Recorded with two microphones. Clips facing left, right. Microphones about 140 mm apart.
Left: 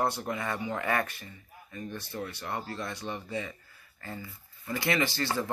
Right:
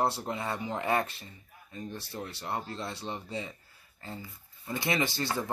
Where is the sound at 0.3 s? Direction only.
30° right (ahead or behind).